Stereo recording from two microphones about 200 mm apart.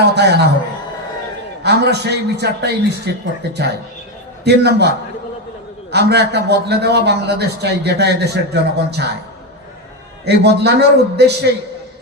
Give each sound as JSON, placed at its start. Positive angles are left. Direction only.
{"t": 0.0, "sound": "a man's voice", "side_deg": -55}
{"t": 1.6, "sound": "a man's voice", "side_deg": -55}
{"t": 4.4, "sound": "a man's voice", "side_deg": -55}
{"t": 10.2, "sound": "a man's voice", "side_deg": -55}